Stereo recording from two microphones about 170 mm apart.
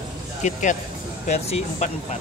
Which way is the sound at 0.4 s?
45° left (ahead or behind).